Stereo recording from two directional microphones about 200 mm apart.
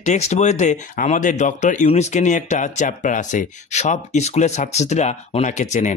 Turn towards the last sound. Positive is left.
turn(degrees=35)  # may be behind; listen again after turning